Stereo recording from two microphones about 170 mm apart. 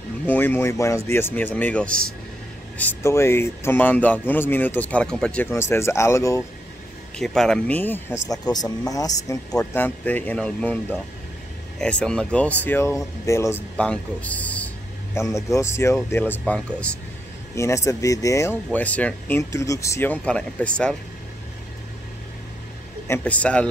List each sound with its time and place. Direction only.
0.3 s speech: 10° left (ahead or behind)
7.2 s speech: 5° left (ahead or behind)
17.6 s speech: 15° left (ahead or behind)
23.0 s speech: 10° left (ahead or behind)